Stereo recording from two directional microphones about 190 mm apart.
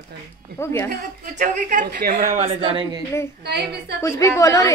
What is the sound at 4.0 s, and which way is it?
Speech, 15° left (ahead or behind).